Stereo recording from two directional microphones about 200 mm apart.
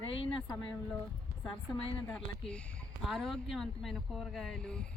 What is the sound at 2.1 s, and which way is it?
Speech, 5° left (ahead or behind).